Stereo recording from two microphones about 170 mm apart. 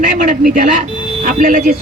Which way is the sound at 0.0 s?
50° right (ahead or behind).